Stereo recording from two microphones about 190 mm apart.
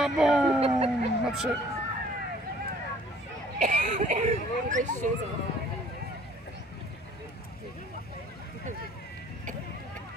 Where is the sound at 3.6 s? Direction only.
40° right (ahead or behind).